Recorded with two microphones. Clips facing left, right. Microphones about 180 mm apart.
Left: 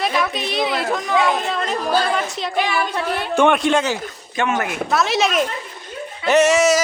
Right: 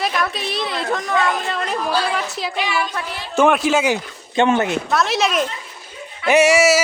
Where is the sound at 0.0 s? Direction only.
Centre (ahead or behind).